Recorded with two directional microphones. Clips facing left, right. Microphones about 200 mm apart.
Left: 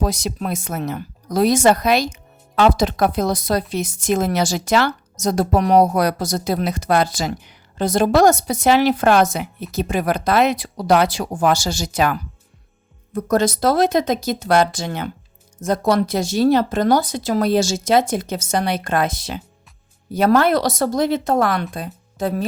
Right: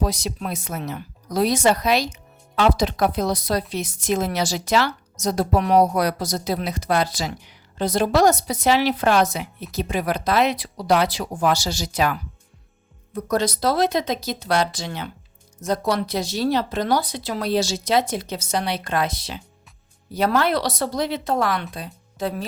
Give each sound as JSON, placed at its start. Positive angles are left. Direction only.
{"t": 0.0, "sound": "speech", "side_deg": 50}
{"t": 13.1, "sound": "speech", "side_deg": 50}